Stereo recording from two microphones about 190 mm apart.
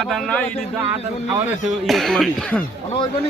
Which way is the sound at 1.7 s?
Centre (ahead or behind).